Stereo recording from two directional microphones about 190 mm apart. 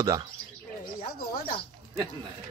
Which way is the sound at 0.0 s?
15° right (ahead or behind).